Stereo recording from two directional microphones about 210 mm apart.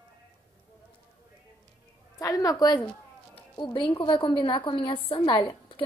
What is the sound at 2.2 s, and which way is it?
A woman's voice, 15° left (ahead or behind).